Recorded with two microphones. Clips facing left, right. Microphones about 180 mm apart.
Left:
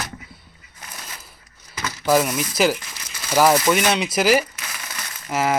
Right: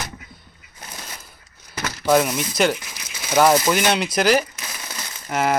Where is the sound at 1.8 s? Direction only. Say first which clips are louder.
Right 1 dB; 70° right (ahead or behind).